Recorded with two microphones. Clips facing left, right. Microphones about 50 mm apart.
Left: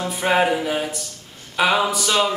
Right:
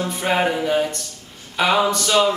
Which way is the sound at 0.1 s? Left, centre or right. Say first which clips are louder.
Left 3 dB; centre.